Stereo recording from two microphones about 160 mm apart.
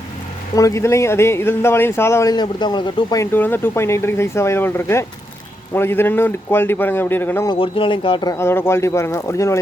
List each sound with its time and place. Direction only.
0.5 s speech: 20° left (ahead or behind)
3.3 s speech: 15° left (ahead or behind)
7.4 s speech: 30° left (ahead or behind)